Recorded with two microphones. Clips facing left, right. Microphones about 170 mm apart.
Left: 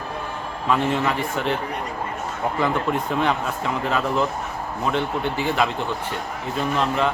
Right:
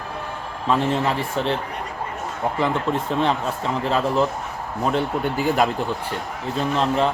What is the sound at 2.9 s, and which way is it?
Speech, 30° right (ahead or behind).